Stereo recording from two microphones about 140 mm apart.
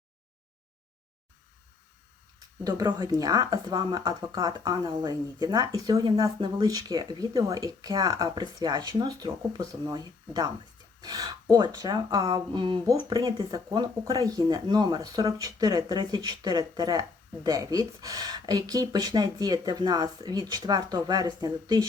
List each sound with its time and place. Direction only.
2.6 s speech: 25° right (ahead or behind)